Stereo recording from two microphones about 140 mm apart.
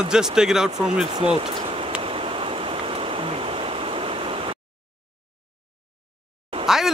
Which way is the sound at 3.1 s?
40° right (ahead or behind).